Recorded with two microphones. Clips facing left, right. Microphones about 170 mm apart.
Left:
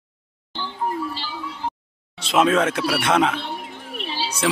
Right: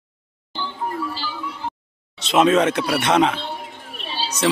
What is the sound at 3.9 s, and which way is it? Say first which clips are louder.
Music: left 1 dB; 70° left (ahead or behind).